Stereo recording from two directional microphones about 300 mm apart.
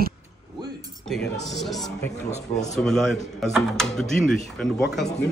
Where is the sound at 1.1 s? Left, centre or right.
Centre.